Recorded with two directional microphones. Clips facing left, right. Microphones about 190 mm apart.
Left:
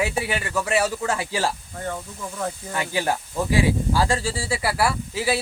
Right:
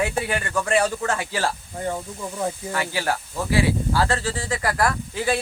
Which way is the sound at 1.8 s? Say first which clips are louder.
Right 3 dB; 15° right (ahead or behind).